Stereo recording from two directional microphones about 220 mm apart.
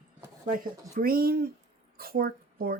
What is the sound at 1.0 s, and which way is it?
Speech, 40° right (ahead or behind).